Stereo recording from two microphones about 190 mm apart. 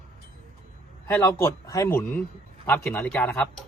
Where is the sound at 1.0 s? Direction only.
15° left (ahead or behind).